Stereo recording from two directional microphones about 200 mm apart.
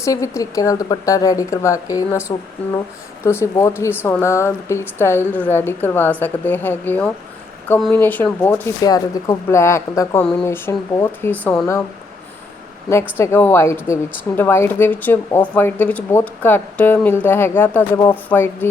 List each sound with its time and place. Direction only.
0.0 s speech: 15° left (ahead or behind)
12.9 s speech: 15° left (ahead or behind)